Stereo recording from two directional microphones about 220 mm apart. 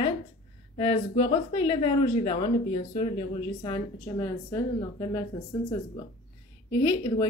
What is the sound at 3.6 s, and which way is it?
Speech, 15° left (ahead or behind).